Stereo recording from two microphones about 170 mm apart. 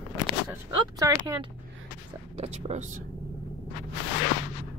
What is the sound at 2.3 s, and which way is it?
Speech, 40° right (ahead or behind).